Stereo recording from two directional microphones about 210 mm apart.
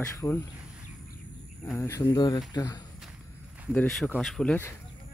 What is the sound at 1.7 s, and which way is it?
Speech, 15° left (ahead or behind).